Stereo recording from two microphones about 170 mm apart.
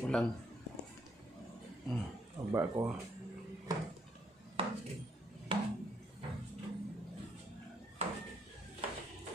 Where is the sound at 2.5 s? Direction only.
15° right (ahead or behind).